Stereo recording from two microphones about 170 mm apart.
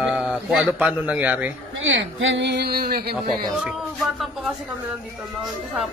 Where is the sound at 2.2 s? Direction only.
90° right; by 3.1 s 65° right (ahead or behind).